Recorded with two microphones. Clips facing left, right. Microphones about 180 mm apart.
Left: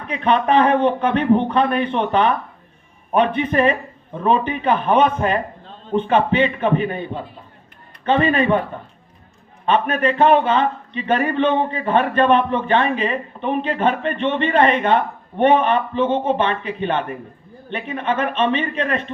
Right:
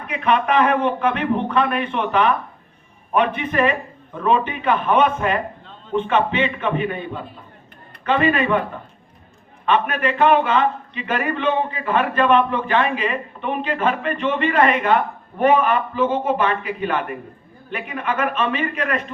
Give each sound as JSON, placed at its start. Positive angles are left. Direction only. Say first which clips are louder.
{"t": 0.1, "sound": "a man's voice", "louder": "left 2 dB", "side_deg": 30}
{"t": 9.6, "sound": "a man's voice", "louder": "left 2 dB", "side_deg": 30}